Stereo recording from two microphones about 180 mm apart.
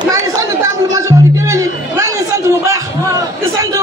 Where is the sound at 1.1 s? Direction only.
15° right (ahead or behind).